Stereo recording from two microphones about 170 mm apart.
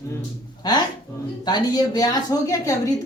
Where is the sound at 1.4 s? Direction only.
25° left (ahead or behind).